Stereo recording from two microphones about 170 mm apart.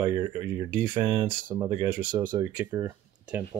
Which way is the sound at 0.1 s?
25° right (ahead or behind).